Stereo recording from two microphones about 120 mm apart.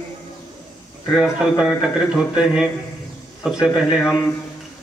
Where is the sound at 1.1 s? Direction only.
5° right (ahead or behind).